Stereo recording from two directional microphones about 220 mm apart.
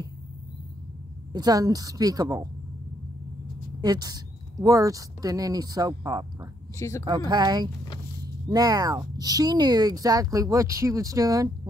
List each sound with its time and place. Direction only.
1.3 s speech: 15° right (ahead or behind)
3.8 s speech: 15° right (ahead or behind)
6.8 s speech: 15° left (ahead or behind)
7.1 s speech: 20° right (ahead or behind)